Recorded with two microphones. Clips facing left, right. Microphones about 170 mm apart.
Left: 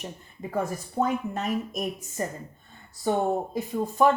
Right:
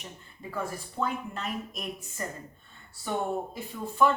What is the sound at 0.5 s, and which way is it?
A woman's voice, 45° left (ahead or behind).